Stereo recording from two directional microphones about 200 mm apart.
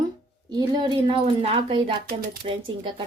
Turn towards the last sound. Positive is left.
turn(degrees=-25)  # may be behind; listen again after turning